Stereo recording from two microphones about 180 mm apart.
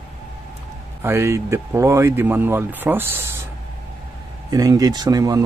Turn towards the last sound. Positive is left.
turn(degrees=-20)  # may be behind; listen again after turning